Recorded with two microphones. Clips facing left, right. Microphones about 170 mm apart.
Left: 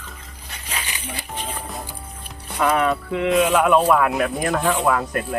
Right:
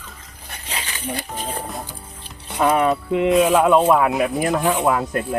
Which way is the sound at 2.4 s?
25° right (ahead or behind).